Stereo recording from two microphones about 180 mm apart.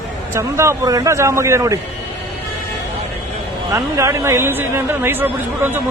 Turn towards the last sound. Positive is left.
turn(degrees=-10)  # may be behind; listen again after turning